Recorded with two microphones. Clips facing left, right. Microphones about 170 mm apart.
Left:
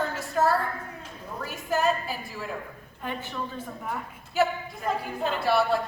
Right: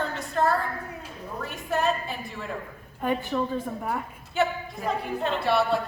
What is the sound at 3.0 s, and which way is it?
Speech, 50° right (ahead or behind).